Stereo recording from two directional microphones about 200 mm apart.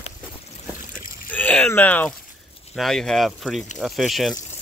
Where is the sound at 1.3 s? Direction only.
5° left (ahead or behind).